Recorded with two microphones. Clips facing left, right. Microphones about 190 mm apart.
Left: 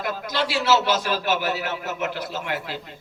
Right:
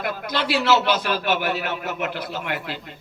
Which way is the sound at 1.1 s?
55° right (ahead or behind).